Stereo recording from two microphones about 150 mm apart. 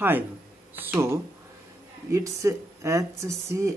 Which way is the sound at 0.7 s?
15° right (ahead or behind).